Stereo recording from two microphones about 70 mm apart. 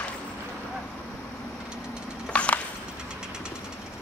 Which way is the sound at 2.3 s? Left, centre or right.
Centre.